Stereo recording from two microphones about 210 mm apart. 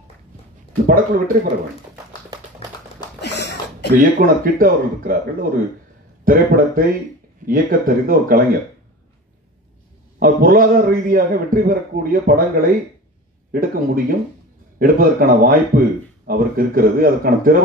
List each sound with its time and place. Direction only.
0.8 s speech: 40° right (ahead or behind)
3.2 s a sound: 55° left (ahead or behind)
4.0 s a man's voice: 45° right (ahead or behind)
10.1 s a man's voice: 45° right (ahead or behind)